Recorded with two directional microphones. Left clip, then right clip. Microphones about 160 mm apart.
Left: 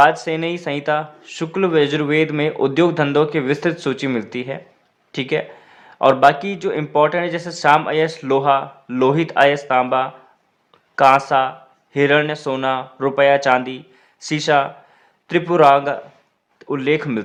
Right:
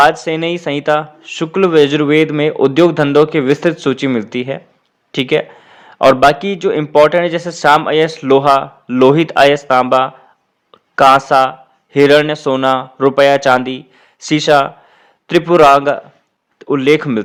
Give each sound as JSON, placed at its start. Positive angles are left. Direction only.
{"t": 0.0, "sound": "speech", "side_deg": -35}
{"t": 10.7, "sound": "a sound", "side_deg": -40}
{"t": 11.1, "sound": "speech", "side_deg": -40}